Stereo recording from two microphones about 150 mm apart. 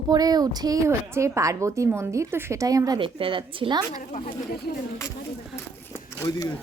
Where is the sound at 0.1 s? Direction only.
25° right (ahead or behind).